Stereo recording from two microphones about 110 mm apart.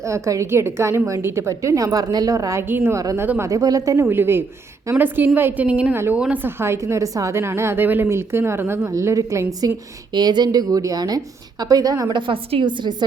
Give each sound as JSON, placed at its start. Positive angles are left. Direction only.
{"t": 0.0, "sound": "a woman's voice", "side_deg": -30}